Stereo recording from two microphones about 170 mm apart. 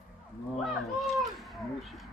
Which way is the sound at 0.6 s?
Centre (ahead or behind).